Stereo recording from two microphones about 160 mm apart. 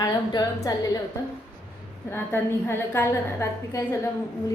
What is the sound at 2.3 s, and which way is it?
A woman's voice, 15° left (ahead or behind).